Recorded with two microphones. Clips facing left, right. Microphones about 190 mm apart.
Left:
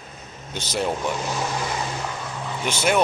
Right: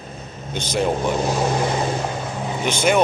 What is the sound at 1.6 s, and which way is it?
Boat, 35° right (ahead or behind).